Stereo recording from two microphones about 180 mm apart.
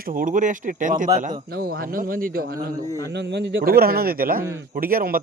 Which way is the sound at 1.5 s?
55° right (ahead or behind).